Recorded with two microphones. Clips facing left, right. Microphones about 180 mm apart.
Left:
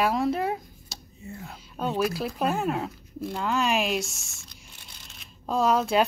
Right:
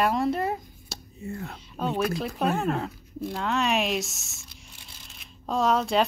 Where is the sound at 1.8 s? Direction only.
Centre (ahead or behind).